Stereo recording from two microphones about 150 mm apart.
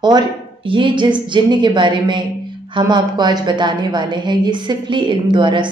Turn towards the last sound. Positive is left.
turn(degrees=-30)  # may be behind; listen again after turning